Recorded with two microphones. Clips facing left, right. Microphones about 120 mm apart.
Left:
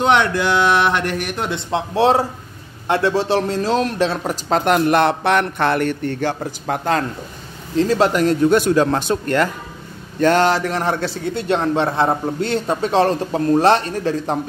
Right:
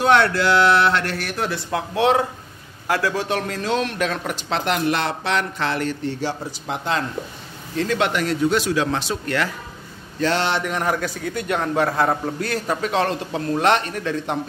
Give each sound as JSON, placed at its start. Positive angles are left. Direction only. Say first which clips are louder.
{"t": 0.0, "sound": "a man's voice", "louder": "left 1 dB", "side_deg": 15}
{"t": 7.7, "sound": "a man's voice", "louder": "left 5 dB", "side_deg": 35}